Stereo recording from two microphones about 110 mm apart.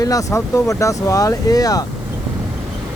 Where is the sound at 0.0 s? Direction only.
30° left (ahead or behind).